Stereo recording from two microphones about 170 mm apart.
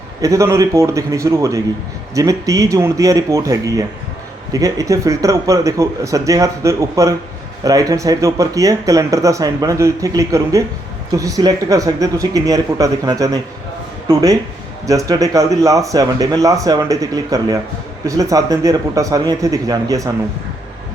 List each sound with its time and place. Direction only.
0.2 s a man's voice: 20° right (ahead or behind)